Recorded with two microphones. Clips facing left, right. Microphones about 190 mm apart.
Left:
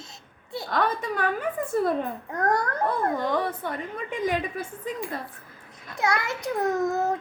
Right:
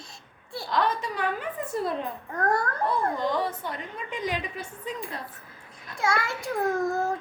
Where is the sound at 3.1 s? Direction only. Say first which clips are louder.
Left 1 dB; 55° left (ahead or behind).